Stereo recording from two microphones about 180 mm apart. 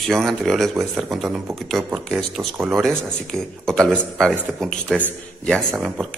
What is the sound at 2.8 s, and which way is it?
Speech, 5° left (ahead or behind).